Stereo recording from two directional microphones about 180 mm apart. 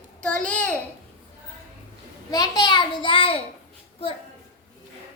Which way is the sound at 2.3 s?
20° left (ahead or behind).